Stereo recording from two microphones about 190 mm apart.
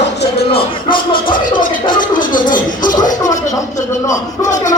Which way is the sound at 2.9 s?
45° left (ahead or behind).